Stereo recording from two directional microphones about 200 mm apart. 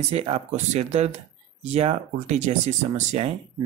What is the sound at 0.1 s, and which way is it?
Speech, 30° right (ahead or behind).